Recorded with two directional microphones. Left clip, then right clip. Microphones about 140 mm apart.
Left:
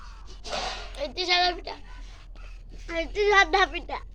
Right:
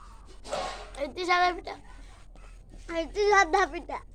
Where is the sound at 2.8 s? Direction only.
5° right (ahead or behind).